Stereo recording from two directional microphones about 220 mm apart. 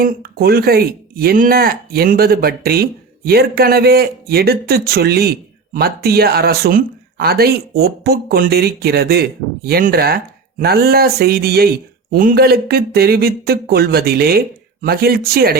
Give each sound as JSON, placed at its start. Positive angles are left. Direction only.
{"t": 0.0, "sound": "speech", "side_deg": -45}